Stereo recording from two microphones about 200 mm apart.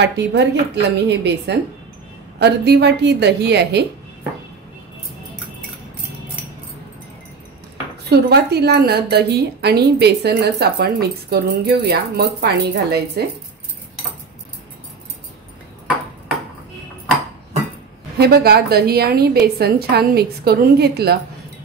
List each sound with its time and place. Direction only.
0.0 s a woman's voice: 60° right (ahead or behind)
8.1 s a woman's voice: 55° right (ahead or behind)
18.1 s a woman's voice: 55° right (ahead or behind)